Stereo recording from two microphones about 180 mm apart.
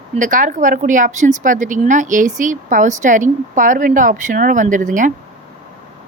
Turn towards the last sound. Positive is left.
turn(degrees=-45)  # may be behind; listen again after turning